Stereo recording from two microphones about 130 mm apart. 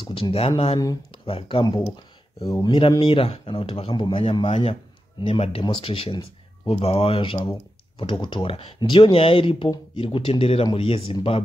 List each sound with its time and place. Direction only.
0.0 s speech: 45° left (ahead or behind)
1.6 s a man's voice: 30° left (ahead or behind); by 11.1 s 45° left (ahead or behind)